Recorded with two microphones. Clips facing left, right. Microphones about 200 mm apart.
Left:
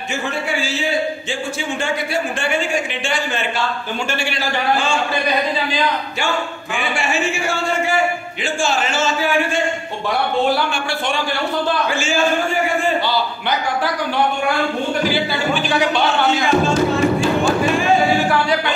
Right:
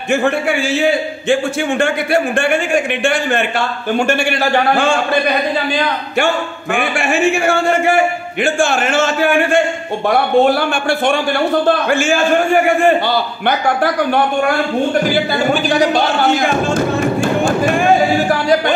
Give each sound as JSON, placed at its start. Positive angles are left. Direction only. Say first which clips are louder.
{"t": 0.1, "sound": "a man's voice", "louder": "right 9 dB", "side_deg": -60}
{"t": 6.7, "sound": "a man's voice", "louder": "right 6 dB", "side_deg": -55}
{"t": 15.0, "sound": "music", "louder": "right 4 dB", "side_deg": -45}